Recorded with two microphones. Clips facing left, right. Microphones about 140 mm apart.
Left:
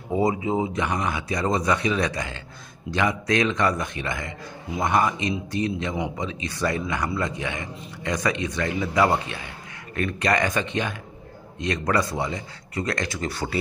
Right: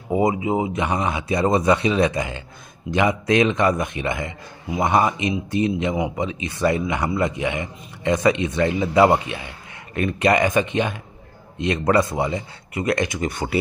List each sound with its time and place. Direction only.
0.1 s a man's voice: 15° right (ahead or behind)